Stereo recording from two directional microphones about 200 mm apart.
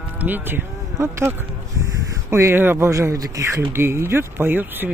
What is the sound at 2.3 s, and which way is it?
Speech, 10° right (ahead or behind).